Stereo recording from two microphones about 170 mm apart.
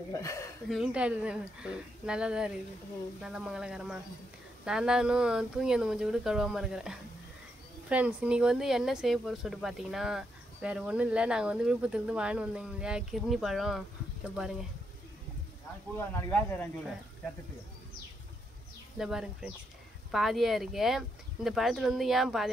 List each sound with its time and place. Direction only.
0.1 s speech: 20° left (ahead or behind)
0.7 s speech: 5° right (ahead or behind)
16.0 s speech: 10° left (ahead or behind)
18.9 s speech: 5° right (ahead or behind)